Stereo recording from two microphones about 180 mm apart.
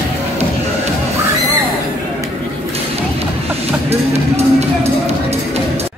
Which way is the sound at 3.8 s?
35° right (ahead or behind).